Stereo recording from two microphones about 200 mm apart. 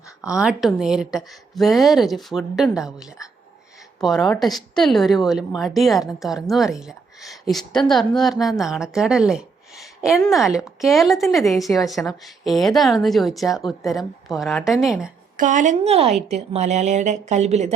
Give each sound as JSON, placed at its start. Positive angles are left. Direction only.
{"t": 0.2, "sound": "a woman's voice", "side_deg": -5}
{"t": 15.4, "sound": "speech", "side_deg": -40}